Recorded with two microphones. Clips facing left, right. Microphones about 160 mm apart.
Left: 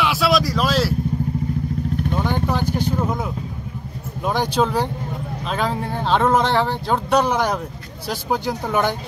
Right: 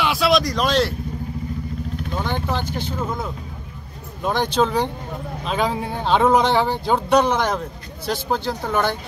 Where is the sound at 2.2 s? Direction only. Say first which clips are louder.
Left 1 dB; 10° left (ahead or behind).